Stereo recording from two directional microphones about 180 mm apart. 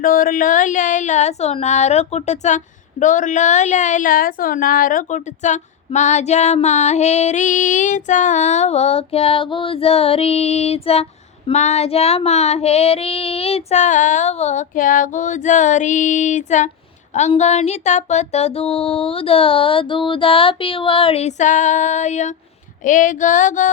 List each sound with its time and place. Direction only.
0.0 s a woman's voice: 50° left (ahead or behind)
22.8 s female singing: 45° left (ahead or behind)